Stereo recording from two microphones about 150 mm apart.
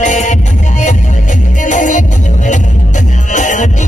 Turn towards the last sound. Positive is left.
turn(degrees=55)  # may be behind; listen again after turning